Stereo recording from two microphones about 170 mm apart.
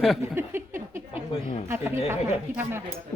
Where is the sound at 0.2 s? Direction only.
15° right (ahead or behind).